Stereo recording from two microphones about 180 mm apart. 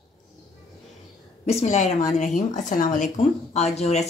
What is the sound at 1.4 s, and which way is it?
A woman's voice, 35° left (ahead or behind).